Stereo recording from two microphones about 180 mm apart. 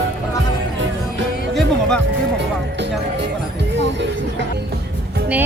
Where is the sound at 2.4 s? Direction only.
75° right (ahead or behind).